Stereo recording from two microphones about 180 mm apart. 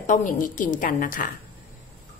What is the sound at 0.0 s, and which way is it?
A woman's voice, 45° left (ahead or behind).